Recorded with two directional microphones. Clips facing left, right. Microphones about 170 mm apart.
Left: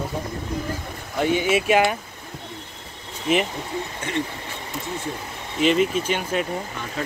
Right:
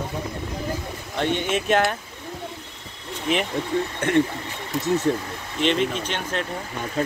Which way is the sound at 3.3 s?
5° left (ahead or behind).